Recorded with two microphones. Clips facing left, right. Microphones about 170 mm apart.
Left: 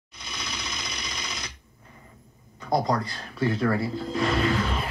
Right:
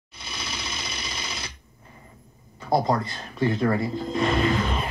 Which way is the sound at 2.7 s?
25° right (ahead or behind).